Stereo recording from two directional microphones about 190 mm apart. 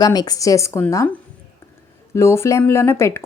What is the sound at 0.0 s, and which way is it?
Speech, 20° left (ahead or behind).